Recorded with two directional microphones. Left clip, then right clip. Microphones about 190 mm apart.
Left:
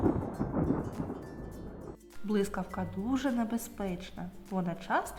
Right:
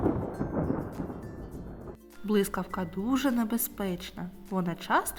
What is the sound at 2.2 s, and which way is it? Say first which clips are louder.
A woman's voice: right 4 dB; 20° right (ahead or behind).